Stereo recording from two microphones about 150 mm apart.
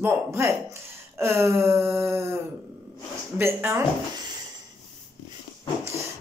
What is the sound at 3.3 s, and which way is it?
Speech, 15° right (ahead or behind).